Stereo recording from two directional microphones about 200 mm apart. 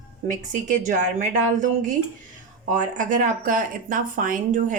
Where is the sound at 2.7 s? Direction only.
40° right (ahead or behind).